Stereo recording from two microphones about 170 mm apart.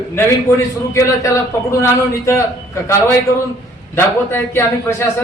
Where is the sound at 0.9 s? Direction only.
20° left (ahead or behind).